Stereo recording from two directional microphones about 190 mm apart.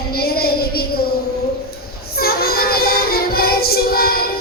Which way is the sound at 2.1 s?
55° left (ahead or behind).